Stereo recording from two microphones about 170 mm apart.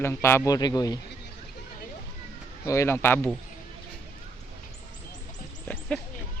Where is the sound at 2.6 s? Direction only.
15° left (ahead or behind).